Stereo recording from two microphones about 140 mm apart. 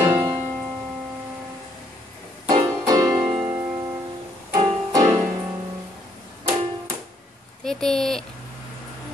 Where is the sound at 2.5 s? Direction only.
25° right (ahead or behind).